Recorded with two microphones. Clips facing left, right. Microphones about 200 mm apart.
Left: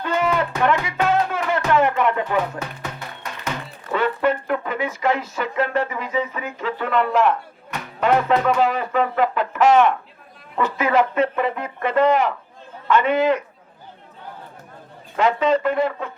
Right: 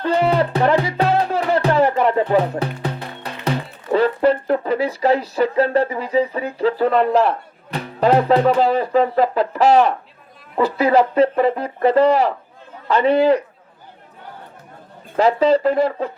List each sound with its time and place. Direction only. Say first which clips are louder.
0.0 s music: right 4 dB; 35° right (ahead or behind)
10.5 s speech: right 4 dB; 35° right (ahead or behind)
15.1 s speech: right 4 dB; 35° right (ahead or behind)